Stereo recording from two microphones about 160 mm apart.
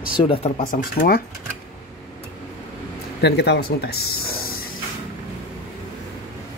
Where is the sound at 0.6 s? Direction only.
60° left (ahead or behind).